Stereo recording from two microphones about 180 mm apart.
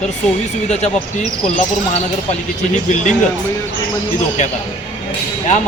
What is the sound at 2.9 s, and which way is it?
Speech, 40° left (ahead or behind).